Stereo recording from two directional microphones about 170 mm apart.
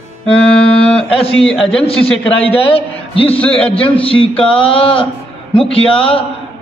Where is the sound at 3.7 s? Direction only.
30° left (ahead or behind).